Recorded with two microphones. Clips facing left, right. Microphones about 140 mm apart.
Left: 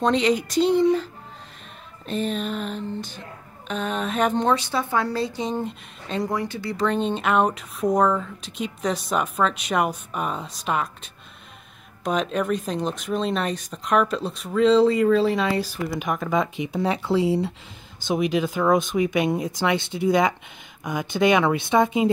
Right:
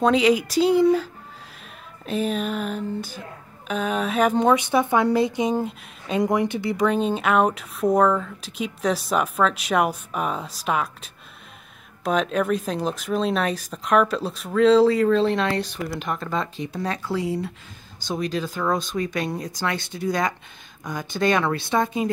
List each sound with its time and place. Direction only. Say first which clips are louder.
0.0 s speech: right 2 dB; 5° right (ahead or behind)
2.0 s speech: right 2 dB; 5° right (ahead or behind)
6.2 s speech: right 6 dB; 20° right (ahead or behind)
6.9 s speech: left 1 dB; 5° right (ahead or behind); by 22.1 s 20° left (ahead or behind)